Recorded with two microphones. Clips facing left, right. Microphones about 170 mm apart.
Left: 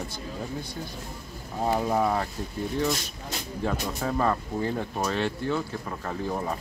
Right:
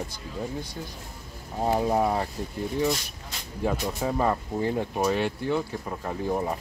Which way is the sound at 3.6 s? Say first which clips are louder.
Right 2 dB; 15° right (ahead or behind).